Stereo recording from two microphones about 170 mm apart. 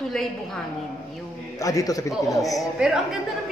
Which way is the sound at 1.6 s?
20° left (ahead or behind).